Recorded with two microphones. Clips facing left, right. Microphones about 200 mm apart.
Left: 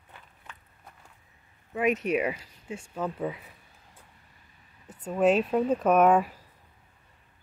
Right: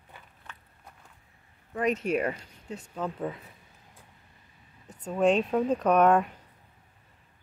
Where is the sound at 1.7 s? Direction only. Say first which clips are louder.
Left 1 dB; 5° left (ahead or behind).